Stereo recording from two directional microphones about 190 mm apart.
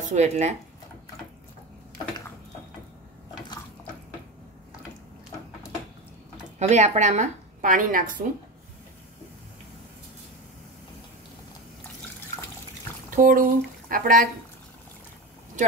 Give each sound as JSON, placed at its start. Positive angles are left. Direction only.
{"t": 0.1, "sound": "a woman's voice", "side_deg": -35}
{"t": 6.6, "sound": "a woman's voice", "side_deg": -35}
{"t": 13.1, "sound": "speech", "side_deg": -45}